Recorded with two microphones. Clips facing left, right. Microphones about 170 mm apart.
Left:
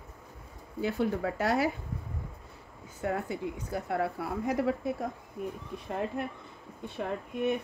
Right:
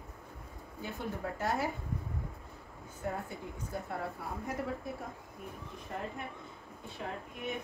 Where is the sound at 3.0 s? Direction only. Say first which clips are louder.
Left 7 dB; 80° left.